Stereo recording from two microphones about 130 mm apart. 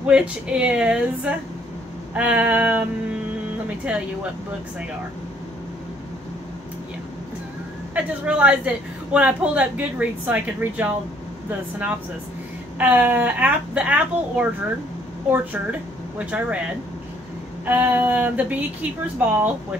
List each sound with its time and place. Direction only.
0.0 s a woman's voice: 10° right (ahead or behind)
7.9 s a woman's voice: 10° right (ahead or behind)
12.7 s a woman's voice: 15° right (ahead or behind)